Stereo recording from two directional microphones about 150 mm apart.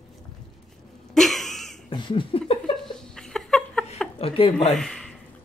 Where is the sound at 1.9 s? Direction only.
35° left (ahead or behind).